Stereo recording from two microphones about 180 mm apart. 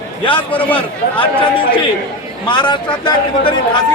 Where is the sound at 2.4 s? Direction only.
25° left (ahead or behind).